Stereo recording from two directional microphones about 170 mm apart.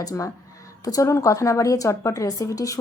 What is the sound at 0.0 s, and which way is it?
A woman's voice, 20° left (ahead or behind).